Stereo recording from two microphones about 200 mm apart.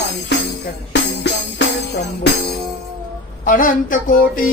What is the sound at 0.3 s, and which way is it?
Music, 60° left (ahead or behind).